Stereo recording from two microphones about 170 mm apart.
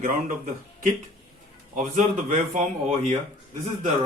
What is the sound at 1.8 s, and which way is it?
Speech, 45° right (ahead or behind).